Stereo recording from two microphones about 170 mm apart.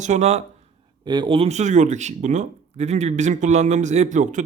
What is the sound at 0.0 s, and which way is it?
Speech, 45° right (ahead or behind).